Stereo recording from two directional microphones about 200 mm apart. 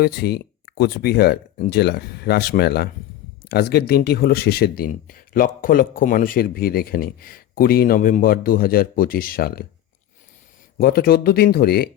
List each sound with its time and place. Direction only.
0.0 s speech: 55° left (ahead or behind)
10.8 s speech: 50° left (ahead or behind)